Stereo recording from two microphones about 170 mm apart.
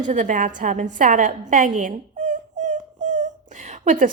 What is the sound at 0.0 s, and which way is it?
A woman's voice, 50° right (ahead or behind).